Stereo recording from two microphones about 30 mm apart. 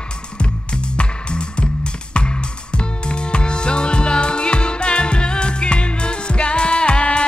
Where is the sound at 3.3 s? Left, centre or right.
Left.